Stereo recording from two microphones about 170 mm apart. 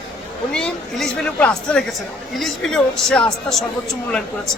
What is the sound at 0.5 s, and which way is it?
A man's voice, 5° left (ahead or behind).